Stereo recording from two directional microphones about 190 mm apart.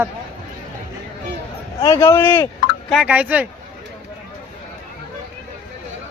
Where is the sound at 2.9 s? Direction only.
5° right (ahead or behind).